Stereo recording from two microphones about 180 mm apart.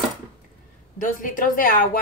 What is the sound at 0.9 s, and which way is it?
Speech, 50° left (ahead or behind).